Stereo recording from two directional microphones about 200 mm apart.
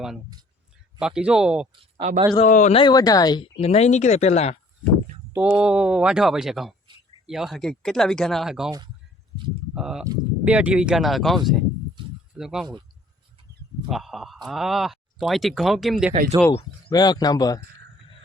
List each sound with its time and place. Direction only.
0.9 s speech: 5° right (ahead or behind)
1.8 s speech: 30° right (ahead or behind)
2.5 s speech: 35° left (ahead or behind)
2.8 s speech: 20° left (ahead or behind)
3.6 s speech: 30° left (ahead or behind)
5.3 s speech: 5° right (ahead or behind)
9.7 s speech: 5° right (ahead or behind)
13.8 s speech: centre (ahead or behind)
16.9 s speech: 20° left (ahead or behind)